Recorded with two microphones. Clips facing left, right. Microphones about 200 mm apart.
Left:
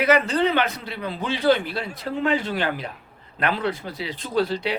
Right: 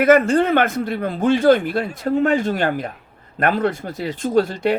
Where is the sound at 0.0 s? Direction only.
50° right (ahead or behind).